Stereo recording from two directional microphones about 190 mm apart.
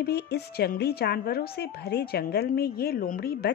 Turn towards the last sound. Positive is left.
turn(degrees=50)  # may be behind; listen again after turning